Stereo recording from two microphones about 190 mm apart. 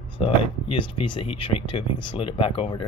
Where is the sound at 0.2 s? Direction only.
25° left (ahead or behind).